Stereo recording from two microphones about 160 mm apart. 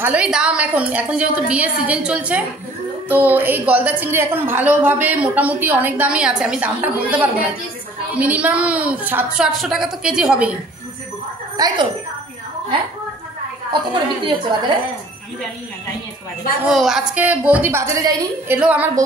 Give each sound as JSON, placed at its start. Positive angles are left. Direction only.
{"t": 0.0, "sound": "a woman's voice", "side_deg": -10}
{"t": 11.5, "sound": "a woman's voice", "side_deg": -25}
{"t": 13.7, "sound": "a woman's voice", "side_deg": -30}
{"t": 16.6, "sound": "a woman's voice", "side_deg": 0}
{"t": 18.6, "sound": "a woman's voice", "side_deg": -10}